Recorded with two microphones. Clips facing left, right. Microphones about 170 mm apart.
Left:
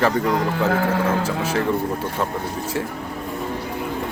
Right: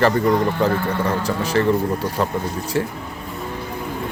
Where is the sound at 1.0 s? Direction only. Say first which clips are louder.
Even; 5° left (ahead or behind).